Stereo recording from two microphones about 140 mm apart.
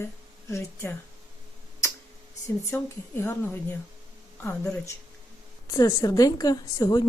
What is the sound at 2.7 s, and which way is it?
A woman's voice, 20° left (ahead or behind).